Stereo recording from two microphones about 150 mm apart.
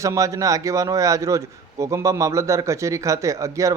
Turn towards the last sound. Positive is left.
turn(degrees=-20)  # may be behind; listen again after turning